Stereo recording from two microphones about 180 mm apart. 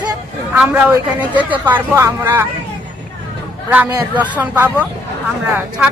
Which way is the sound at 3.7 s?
10° right (ahead or behind).